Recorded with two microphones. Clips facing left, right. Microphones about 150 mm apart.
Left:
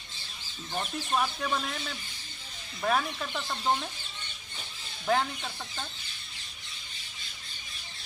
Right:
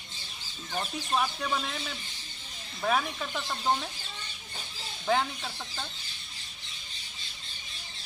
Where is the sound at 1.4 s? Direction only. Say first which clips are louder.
Even; centre (ahead or behind).